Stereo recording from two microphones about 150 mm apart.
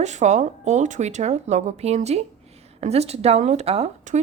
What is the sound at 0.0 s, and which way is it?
Speech, 50° right (ahead or behind).